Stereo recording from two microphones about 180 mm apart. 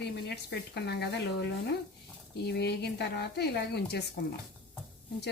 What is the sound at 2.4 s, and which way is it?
A woman's voice, 65° left (ahead or behind).